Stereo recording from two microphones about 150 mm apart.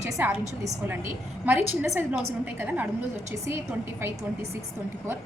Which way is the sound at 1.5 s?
15° right (ahead or behind).